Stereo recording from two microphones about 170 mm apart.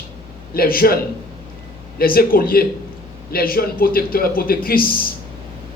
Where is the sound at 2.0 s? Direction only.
60° left (ahead or behind).